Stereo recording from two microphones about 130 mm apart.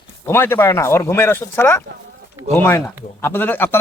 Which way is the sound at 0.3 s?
20° left (ahead or behind).